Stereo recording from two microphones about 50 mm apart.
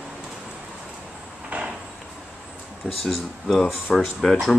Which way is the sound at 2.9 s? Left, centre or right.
Centre.